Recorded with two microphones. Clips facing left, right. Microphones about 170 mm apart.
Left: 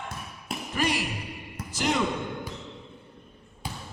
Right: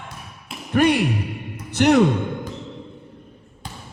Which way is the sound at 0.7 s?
60° right (ahead or behind).